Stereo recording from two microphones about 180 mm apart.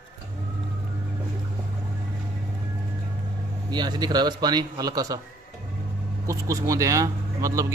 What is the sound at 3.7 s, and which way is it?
A man's voice, 25° right (ahead or behind).